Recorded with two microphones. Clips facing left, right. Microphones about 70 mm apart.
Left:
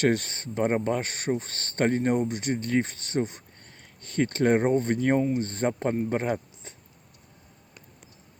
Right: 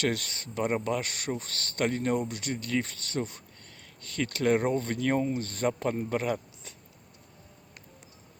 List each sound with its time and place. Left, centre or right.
0.0 s speech: left